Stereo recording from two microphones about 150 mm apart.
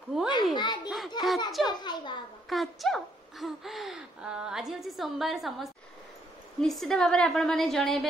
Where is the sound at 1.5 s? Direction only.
Centre (ahead or behind).